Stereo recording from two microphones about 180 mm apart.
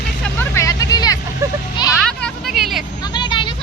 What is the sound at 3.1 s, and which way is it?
Vehicle, 25° left (ahead or behind).